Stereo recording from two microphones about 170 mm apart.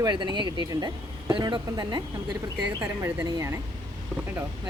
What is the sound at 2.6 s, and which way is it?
Speech, 10° right (ahead or behind).